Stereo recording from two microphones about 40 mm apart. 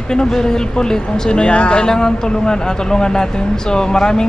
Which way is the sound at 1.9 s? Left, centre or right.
Centre.